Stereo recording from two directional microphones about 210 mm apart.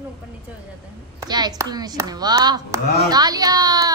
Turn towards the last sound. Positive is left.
turn(degrees=-20)  # may be behind; listen again after turning